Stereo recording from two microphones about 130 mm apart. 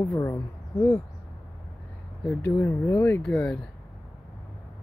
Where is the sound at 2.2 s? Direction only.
15° left (ahead or behind).